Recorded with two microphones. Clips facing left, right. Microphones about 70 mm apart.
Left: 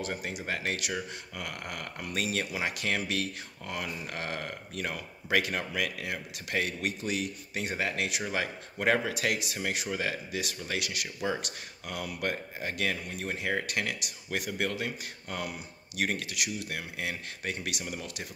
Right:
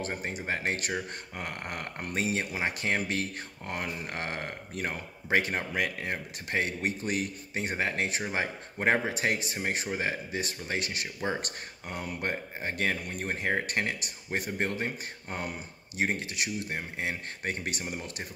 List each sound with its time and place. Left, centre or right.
0.0 s speech: right